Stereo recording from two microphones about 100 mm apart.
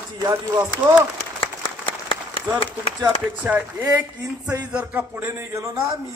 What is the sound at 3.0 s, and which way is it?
Speech, 15° right (ahead or behind).